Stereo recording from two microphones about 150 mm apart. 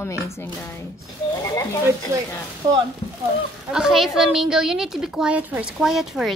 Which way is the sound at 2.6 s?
30° right (ahead or behind).